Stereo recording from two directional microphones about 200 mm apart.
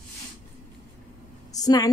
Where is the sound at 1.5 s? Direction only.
20° left (ahead or behind).